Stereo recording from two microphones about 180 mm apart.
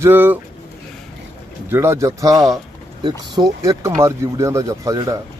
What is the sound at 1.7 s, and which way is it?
Speech, 15° right (ahead or behind).